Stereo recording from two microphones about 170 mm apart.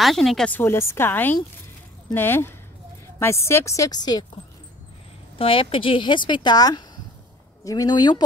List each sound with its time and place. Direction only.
0.0 s speech: centre (ahead or behind); by 4.3 s 25° left (ahead or behind)
5.4 s a woman's voice: 30° left (ahead or behind)